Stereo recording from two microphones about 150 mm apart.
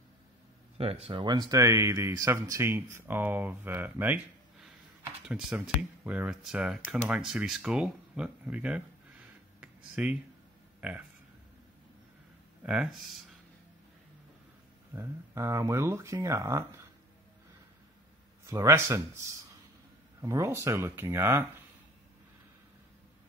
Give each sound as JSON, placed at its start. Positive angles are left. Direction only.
{"t": 0.7, "sound": "speech", "side_deg": -40}
{"t": 9.6, "sound": "a sound", "side_deg": -10}
{"t": 10.8, "sound": "speech", "side_deg": -10}
{"t": 12.6, "sound": "speech", "side_deg": -10}
{"t": 15.0, "sound": "speech", "side_deg": -20}
{"t": 18.4, "sound": "speech", "side_deg": -20}